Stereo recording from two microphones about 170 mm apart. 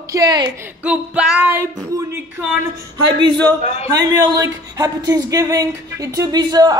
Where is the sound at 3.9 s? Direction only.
20° right (ahead or behind).